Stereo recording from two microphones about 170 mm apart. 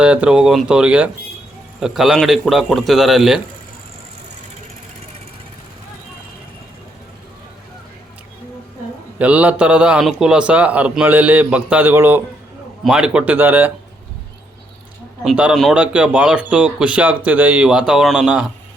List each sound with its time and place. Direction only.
0.0 s a man's voice: 5° right (ahead or behind)
9.1 s speech: 10° right (ahead or behind)
15.2 s speech: 5° right (ahead or behind)